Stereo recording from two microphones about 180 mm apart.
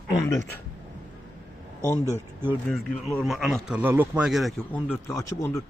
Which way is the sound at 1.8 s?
15° left (ahead or behind).